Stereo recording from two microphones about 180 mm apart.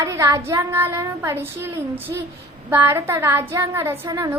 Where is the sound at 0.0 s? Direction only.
15° right (ahead or behind).